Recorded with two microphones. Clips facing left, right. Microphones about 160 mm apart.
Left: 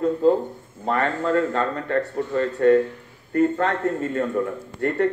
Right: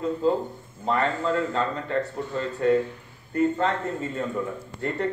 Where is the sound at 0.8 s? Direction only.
55° left (ahead or behind).